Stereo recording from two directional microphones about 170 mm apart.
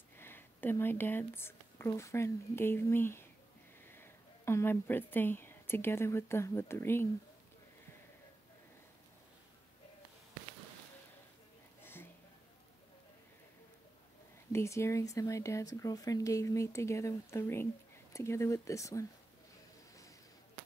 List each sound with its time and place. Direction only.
0.2 s speech: 10° left (ahead or behind)
11.8 s a sound: 15° left (ahead or behind)
14.5 s speech: 15° left (ahead or behind)